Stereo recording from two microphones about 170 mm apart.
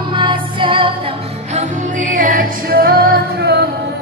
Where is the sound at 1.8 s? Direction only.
50° right (ahead or behind).